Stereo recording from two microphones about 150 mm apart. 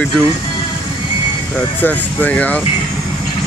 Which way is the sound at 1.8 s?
10° left (ahead or behind).